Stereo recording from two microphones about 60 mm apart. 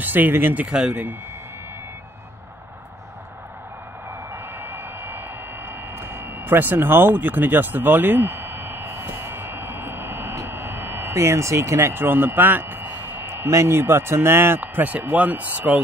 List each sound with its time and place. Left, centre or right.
0.0 s speech: right
0.7 s speech: centre
4.3 s vehicle: right
5.7 s a sound: right
14.6 s speech: right